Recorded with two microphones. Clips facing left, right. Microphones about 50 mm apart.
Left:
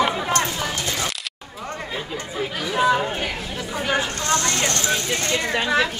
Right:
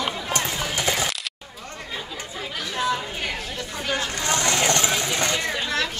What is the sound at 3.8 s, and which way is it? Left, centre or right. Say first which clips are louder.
Speech: left 4 dB; centre.